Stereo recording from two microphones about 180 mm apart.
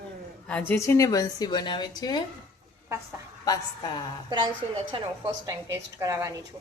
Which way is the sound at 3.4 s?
20° left (ahead or behind).